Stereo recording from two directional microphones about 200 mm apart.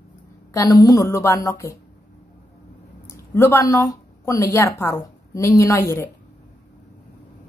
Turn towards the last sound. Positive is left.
turn(degrees=15)  # may be behind; listen again after turning